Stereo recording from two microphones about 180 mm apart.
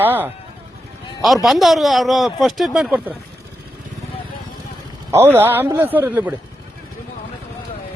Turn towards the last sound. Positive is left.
turn(degrees=-10)  # may be behind; listen again after turning